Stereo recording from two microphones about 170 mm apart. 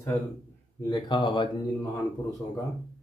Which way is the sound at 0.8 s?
25° left (ahead or behind).